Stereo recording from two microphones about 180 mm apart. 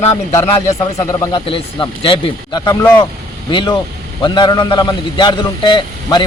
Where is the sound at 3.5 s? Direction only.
25° left (ahead or behind).